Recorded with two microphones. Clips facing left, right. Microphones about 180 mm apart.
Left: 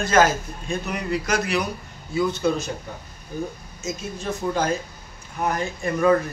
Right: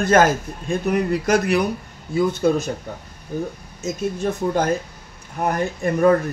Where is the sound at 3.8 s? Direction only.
55° right (ahead or behind).